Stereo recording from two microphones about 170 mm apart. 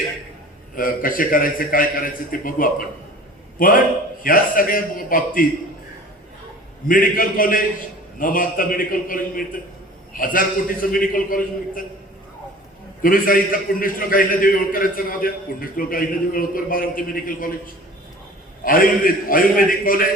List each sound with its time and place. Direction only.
0.8 s a man's voice: 55° left (ahead or behind)
6.8 s a man's voice: 55° left (ahead or behind)
13.0 s a man's voice: 55° left (ahead or behind)
18.6 s a man's voice: 55° left (ahead or behind)